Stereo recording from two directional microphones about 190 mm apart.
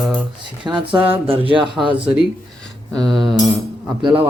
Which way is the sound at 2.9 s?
Centre (ahead or behind).